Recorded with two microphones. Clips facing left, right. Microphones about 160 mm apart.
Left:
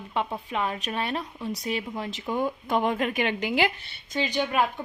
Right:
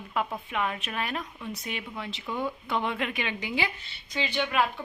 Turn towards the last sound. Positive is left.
turn(degrees=40)  # may be behind; listen again after turning